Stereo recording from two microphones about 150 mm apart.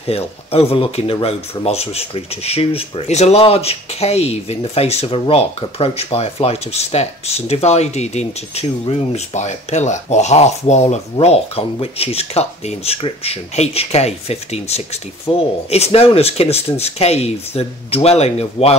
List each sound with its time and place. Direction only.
0.0 s speech: 40° left (ahead or behind)